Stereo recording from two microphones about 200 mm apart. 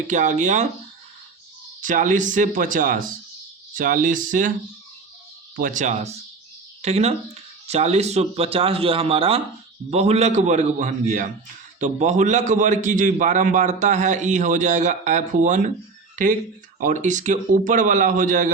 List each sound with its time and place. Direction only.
0.1 s a man's voice: 40° right (ahead or behind)
1.8 s a man's voice: 40° right (ahead or behind)
5.5 s a man's voice: 40° right (ahead or behind)